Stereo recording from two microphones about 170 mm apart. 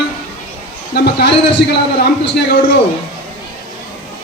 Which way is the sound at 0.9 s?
70° left (ahead or behind).